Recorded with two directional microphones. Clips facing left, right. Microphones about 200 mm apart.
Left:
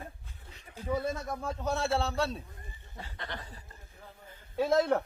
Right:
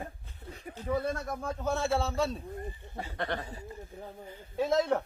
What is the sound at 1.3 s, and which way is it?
Speech, centre (ahead or behind).